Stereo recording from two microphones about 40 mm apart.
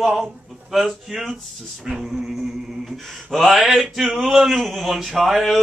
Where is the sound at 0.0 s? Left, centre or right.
Centre.